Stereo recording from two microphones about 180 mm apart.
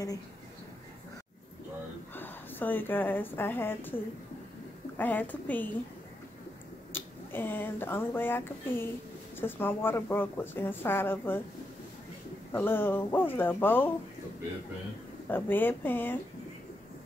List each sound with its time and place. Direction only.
2.1 s a woman's voice: 10° left (ahead or behind)
6.9 s a woman's voice: 10° left (ahead or behind)
12.5 s a woman's voice: 10° left (ahead or behind)
15.2 s a woman's voice: 10° left (ahead or behind)